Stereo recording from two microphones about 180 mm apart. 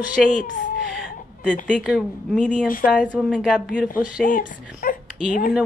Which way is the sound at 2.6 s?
55° left (ahead or behind).